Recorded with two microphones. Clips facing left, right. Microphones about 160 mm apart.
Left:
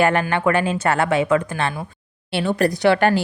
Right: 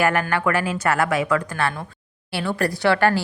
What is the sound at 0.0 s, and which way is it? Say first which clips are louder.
Speech: left 3 dB; 25° left (ahead or behind).